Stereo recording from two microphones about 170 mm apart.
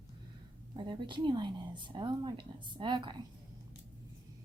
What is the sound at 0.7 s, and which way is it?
A woman's voice, 25° right (ahead or behind).